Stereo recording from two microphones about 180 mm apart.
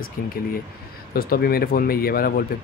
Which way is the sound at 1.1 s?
55° left (ahead or behind).